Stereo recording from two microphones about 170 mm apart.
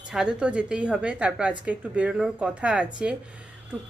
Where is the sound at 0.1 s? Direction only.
5° right (ahead or behind).